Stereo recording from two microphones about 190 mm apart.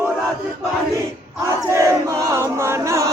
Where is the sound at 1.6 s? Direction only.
15° right (ahead or behind).